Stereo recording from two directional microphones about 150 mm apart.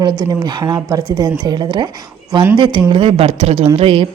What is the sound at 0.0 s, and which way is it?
A woman's voice, 30° right (ahead or behind).